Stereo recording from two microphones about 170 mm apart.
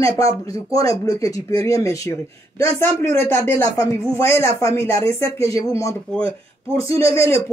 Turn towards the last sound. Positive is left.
turn(degrees=15)  # may be behind; listen again after turning